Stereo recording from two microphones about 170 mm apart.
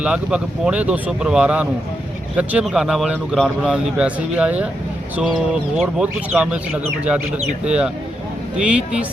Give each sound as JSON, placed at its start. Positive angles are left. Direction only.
{"t": 0.0, "sound": "speech", "side_deg": -5}
{"t": 7.6, "sound": "speech", "side_deg": -5}